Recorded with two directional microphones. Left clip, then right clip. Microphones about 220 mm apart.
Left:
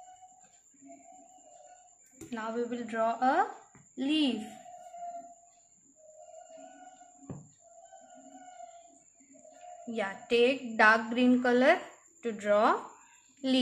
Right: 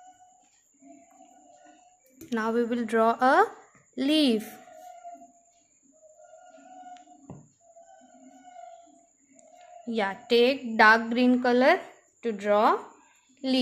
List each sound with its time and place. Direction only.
2.2 s speech: 45° right (ahead or behind)
9.8 s a woman's voice: 30° right (ahead or behind)